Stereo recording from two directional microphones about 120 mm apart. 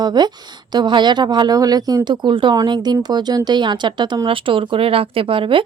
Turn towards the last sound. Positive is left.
turn(degrees=-45)  # may be behind; listen again after turning